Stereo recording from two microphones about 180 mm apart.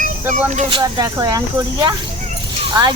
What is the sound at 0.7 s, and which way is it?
A woman's voice, 25° right (ahead or behind).